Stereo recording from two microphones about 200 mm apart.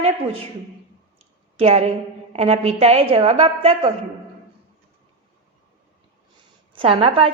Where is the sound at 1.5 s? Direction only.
30° right (ahead or behind).